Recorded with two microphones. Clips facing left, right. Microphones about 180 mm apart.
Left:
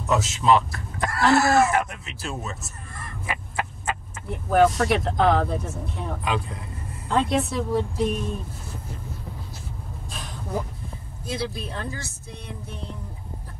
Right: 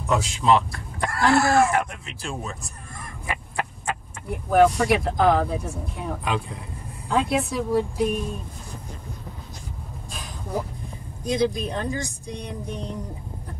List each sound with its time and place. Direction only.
0.0 s speech: 5° left (ahead or behind)
11.2 s speech: 15° right (ahead or behind)